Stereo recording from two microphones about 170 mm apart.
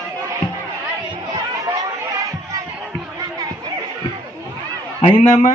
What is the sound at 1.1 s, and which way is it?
Chatter, 25° right (ahead or behind).